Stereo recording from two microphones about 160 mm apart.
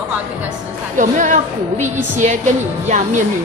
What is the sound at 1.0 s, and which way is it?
A woman's voice, 50° right (ahead or behind).